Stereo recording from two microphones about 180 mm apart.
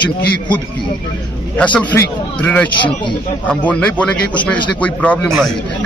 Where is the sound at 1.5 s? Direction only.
10° left (ahead or behind).